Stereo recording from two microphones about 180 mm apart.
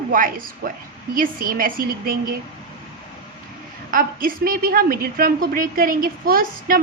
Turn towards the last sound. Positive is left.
turn(degrees=-55)  # may be behind; listen again after turning